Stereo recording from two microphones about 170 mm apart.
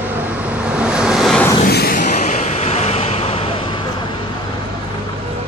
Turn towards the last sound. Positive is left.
turn(degrees=35)  # may be behind; listen again after turning